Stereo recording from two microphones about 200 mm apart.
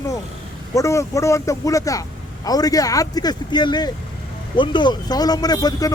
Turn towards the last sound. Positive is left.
turn(degrees=20)  # may be behind; listen again after turning